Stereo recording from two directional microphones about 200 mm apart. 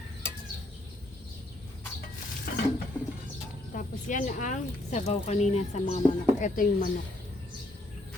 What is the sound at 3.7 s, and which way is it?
Speech, 40° left (ahead or behind).